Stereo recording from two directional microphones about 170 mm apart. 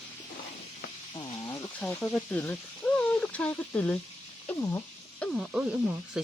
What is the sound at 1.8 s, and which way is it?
Speech, 5° left (ahead or behind).